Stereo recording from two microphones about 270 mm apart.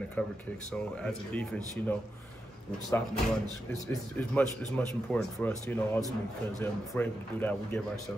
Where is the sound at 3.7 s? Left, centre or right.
Centre.